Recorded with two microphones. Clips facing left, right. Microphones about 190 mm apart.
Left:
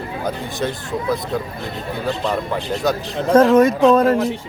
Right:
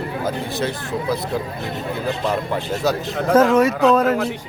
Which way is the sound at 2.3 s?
5° right (ahead or behind).